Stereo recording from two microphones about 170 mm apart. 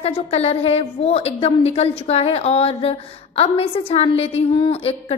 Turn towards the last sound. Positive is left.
turn(degrees=30)  # may be behind; listen again after turning